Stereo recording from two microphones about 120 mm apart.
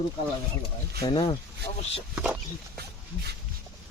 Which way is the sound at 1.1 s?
40° left (ahead or behind).